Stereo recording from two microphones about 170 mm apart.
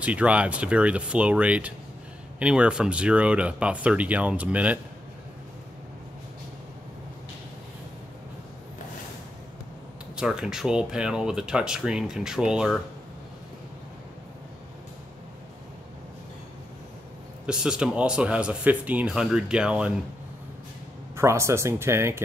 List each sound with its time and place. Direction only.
0.0 s speech: 10° right (ahead or behind)
10.1 s speech: 5° right (ahead or behind)
17.5 s speech: 5° right (ahead or behind)
21.2 s speech: 15° right (ahead or behind)